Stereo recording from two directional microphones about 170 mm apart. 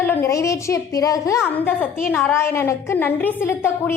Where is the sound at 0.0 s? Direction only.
15° left (ahead or behind).